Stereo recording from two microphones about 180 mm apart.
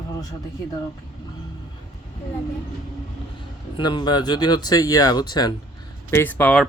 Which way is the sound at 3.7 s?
25° left (ahead or behind).